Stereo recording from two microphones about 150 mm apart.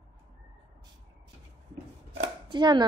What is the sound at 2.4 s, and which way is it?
Speech, 30° right (ahead or behind).